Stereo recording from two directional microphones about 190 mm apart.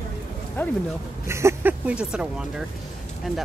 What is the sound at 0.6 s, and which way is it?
Speech, 10° left (ahead or behind).